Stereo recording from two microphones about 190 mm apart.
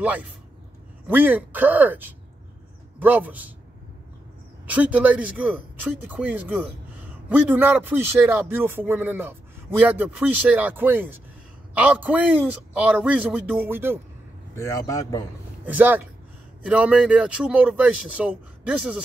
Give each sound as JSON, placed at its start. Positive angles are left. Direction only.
{"t": 1.0, "sound": "speech", "side_deg": -10}
{"t": 4.6, "sound": "speech", "side_deg": -5}
{"t": 14.5, "sound": "speech", "side_deg": 15}
{"t": 15.6, "sound": "speech", "side_deg": -10}